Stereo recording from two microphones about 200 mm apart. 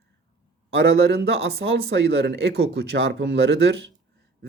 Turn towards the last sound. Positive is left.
turn(degrees=-65)  # may be behind; listen again after turning